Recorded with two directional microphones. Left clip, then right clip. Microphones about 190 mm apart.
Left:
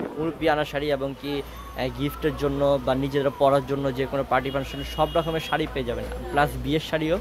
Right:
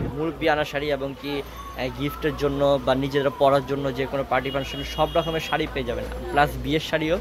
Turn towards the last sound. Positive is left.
turn(degrees=20)  # may be behind; listen again after turning